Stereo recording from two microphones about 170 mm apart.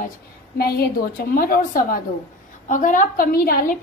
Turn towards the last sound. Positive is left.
turn(degrees=55)  # may be behind; listen again after turning